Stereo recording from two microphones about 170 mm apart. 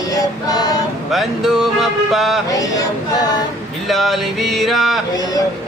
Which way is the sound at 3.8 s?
Centre (ahead or behind).